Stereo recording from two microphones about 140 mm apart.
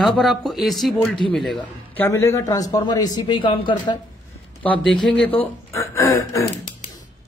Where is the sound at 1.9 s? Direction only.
15° left (ahead or behind); by 3.9 s 35° left (ahead or behind).